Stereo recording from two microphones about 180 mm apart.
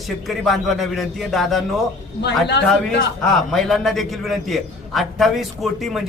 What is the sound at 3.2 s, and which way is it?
A man's voice, centre (ahead or behind).